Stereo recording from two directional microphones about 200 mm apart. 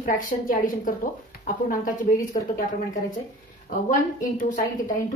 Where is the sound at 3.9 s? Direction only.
40° left (ahead or behind).